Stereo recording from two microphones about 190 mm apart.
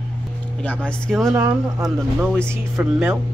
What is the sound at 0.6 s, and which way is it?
Speech, 5° left (ahead or behind).